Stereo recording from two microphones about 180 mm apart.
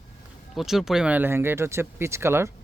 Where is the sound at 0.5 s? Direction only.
Centre (ahead or behind).